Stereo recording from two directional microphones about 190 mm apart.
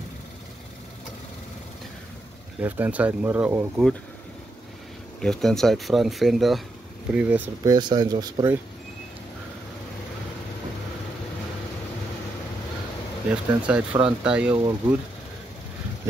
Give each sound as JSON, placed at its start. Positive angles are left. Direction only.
{"t": 2.6, "sound": "speech", "side_deg": -10}
{"t": 5.2, "sound": "speech", "side_deg": 5}
{"t": 7.7, "sound": "speech", "side_deg": -20}
{"t": 13.3, "sound": "speech", "side_deg": -5}